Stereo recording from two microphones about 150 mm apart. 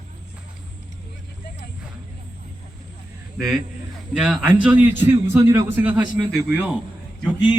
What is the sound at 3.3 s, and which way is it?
A man's voice, 5° right (ahead or behind).